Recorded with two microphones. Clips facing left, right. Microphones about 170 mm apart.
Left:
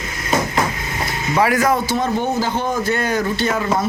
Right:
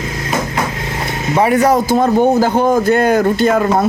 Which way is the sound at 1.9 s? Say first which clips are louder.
Right 8 dB; 50° right (ahead or behind).